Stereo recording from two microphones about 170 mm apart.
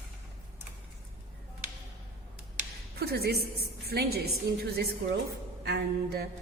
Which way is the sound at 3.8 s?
70° right (ahead or behind).